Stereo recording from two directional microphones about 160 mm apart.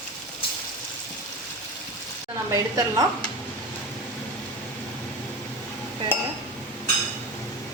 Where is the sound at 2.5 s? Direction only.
20° right (ahead or behind).